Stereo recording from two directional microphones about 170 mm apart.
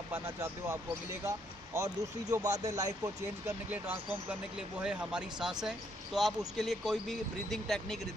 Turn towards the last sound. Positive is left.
turn(degrees=0)  # may be behind; listen again after turning